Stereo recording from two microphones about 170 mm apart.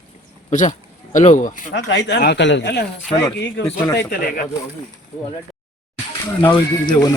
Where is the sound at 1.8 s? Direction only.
90° left.